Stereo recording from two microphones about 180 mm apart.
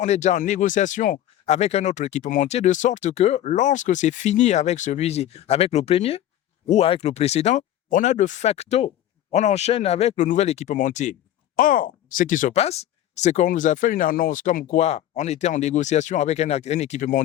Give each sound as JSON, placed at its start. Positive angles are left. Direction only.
{"t": 0.0, "sound": "speech", "side_deg": 40}